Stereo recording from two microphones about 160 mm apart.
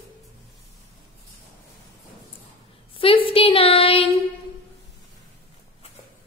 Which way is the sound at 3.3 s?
35° left (ahead or behind).